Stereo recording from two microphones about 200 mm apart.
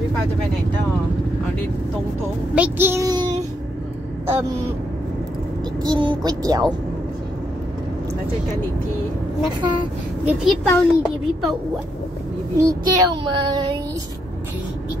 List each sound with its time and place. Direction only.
2.5 s a child's voice: 10° right (ahead or behind)
5.9 s child singing: 20° right (ahead or behind)
10.2 s a child's voice: 5° right (ahead or behind)
12.5 s child singing: 15° right (ahead or behind)